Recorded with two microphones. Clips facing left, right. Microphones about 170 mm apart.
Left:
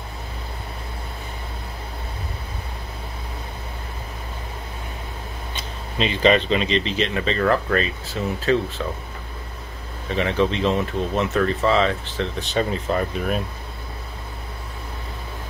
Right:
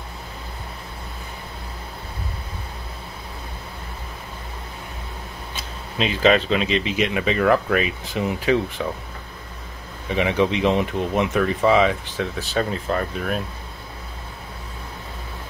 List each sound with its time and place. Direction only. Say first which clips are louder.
5.5 s speech: left 1 dB; 5° right (ahead or behind)
10.0 s speech: right 1 dB; 15° right (ahead or behind); by 13.4 s 5° left (ahead or behind)